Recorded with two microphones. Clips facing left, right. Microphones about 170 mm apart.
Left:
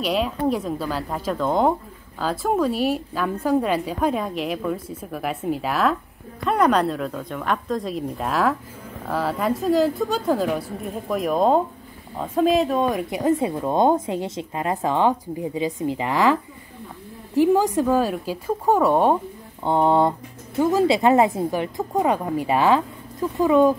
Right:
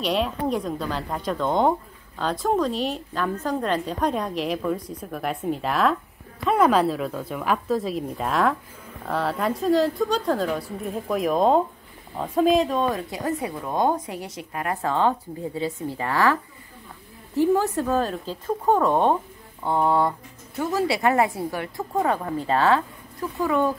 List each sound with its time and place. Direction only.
0.0 s a woman's voice: centre (ahead or behind)
13.1 s speech: 20° left (ahead or behind)
17.4 s speech: 10° left (ahead or behind)
19.6 s speech: 25° left (ahead or behind)